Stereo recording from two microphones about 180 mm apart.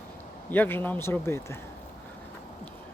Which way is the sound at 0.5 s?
10° left (ahead or behind).